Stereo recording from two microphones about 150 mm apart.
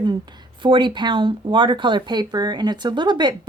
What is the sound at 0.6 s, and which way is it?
Speech, 30° right (ahead or behind).